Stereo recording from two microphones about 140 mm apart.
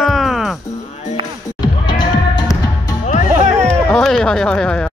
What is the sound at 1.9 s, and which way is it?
Music, 30° left (ahead or behind).